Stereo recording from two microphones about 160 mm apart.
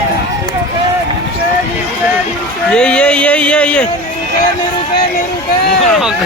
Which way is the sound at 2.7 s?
5° left (ahead or behind).